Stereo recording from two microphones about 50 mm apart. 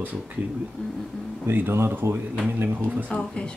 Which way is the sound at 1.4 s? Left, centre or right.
Right.